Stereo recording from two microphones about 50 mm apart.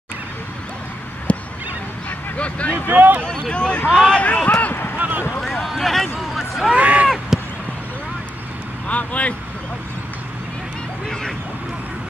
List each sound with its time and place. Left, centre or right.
1.3 s neigh: left
2.0 s vehicle: left
2.9 s speech: right
3.3 s speech: centre
4.2 s speech: left
4.6 s a sound: left
4.9 s boat: right
5.4 s a sound: centre
5.7 s speech: centre
6.1 s a sound: centre
6.7 s speech: right
7.3 s a sound: centre
8.8 s speech: left